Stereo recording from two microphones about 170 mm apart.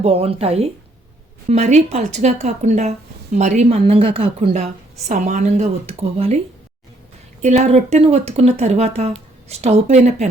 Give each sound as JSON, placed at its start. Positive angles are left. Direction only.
{"t": 0.0, "sound": "a woman's voice", "side_deg": -35}
{"t": 7.4, "sound": "a woman's voice", "side_deg": -40}